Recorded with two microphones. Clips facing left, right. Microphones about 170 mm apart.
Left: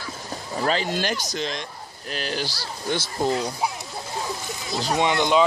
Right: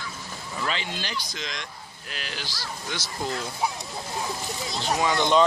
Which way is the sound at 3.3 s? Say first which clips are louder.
Left 7 dB; 15° left (ahead or behind).